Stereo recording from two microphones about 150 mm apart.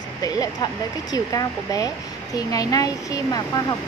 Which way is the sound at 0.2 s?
25° left (ahead or behind).